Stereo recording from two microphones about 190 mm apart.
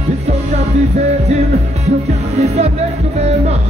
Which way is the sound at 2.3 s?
35° right (ahead or behind).